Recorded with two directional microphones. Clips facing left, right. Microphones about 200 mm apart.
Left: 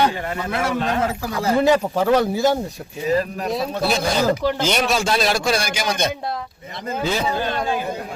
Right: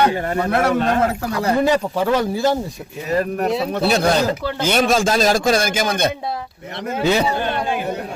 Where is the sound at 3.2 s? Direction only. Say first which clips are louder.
Right 4 dB; 65° right (ahead or behind).